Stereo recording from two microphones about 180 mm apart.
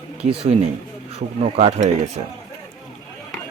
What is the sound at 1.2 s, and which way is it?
Speech, 50° right (ahead or behind).